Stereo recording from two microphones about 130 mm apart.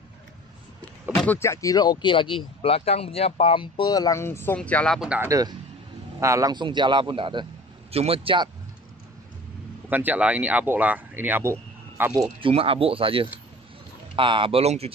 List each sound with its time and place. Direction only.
1.2 s speech: 15° left (ahead or behind)
4.6 s speech: 10° left (ahead or behind)
5.3 s a man's voice: 30° right (ahead or behind)
6.5 s a man's voice: 35° right (ahead or behind)
9.8 s speech: 15° right (ahead or behind)
12.4 s speech: 45° right (ahead or behind)